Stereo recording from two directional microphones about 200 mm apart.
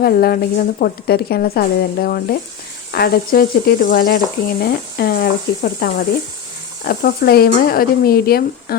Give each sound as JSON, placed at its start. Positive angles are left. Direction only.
{"t": 0.0, "sound": "speech", "side_deg": 50}